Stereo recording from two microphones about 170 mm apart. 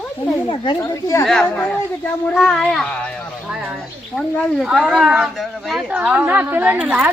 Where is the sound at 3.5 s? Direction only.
5° right (ahead or behind).